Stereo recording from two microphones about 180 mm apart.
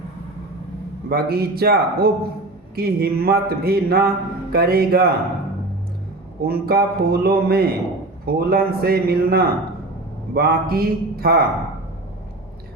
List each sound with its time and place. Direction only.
1.1 s speech: 60° right (ahead or behind)
6.4 s speech: 60° right (ahead or behind)